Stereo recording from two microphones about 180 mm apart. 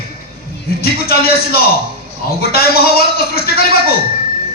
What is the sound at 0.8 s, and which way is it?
Speech, 60° left (ahead or behind).